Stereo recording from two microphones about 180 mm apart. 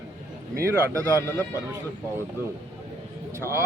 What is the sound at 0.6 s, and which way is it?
Speech, 15° right (ahead or behind).